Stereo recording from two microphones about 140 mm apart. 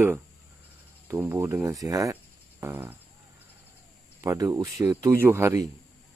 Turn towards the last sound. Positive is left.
turn(degrees=-20)  # may be behind; listen again after turning